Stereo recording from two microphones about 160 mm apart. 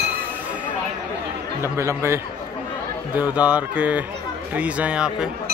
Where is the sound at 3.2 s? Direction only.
10° right (ahead or behind).